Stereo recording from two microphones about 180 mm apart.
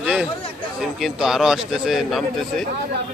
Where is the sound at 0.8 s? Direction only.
Centre (ahead or behind).